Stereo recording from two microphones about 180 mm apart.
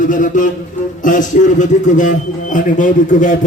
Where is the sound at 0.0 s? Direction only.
45° left (ahead or behind).